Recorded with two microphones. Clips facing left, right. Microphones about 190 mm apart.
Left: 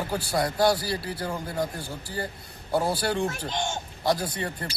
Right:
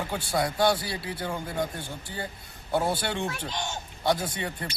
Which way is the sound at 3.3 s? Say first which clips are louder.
Left 3 dB; 50° left (ahead or behind).